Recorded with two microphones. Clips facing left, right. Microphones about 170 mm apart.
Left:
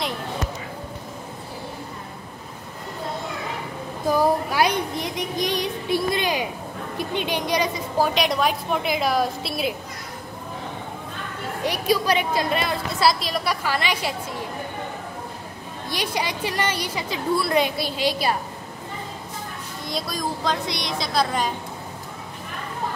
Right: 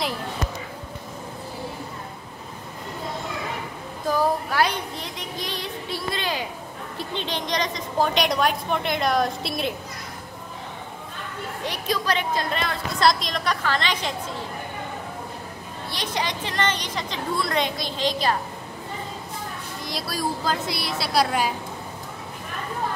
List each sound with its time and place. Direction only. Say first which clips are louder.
4.1 s a sound: left 2 dB; 10° left (ahead or behind)
7.0 s a woman's voice: left 4 dB; 10° left (ahead or behind)
11.6 s a woman's voice: left 5 dB; 10° left (ahead or behind)
15.9 s a woman's voice: left 2 dB; 10° left (ahead or behind)
19.9 s a woman's voice: even; 5° right (ahead or behind)